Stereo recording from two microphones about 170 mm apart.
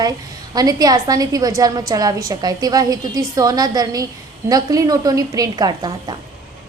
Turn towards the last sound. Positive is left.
turn(degrees=-25)  # may be behind; listen again after turning